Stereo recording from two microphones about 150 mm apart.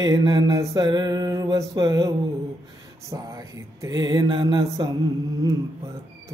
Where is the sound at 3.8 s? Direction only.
25° right (ahead or behind).